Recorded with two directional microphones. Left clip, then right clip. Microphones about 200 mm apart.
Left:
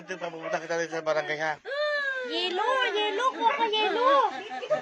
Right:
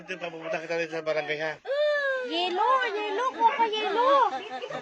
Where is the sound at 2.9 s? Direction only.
20° right (ahead or behind).